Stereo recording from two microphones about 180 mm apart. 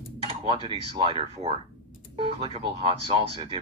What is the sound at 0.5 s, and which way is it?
Speech, 25° right (ahead or behind).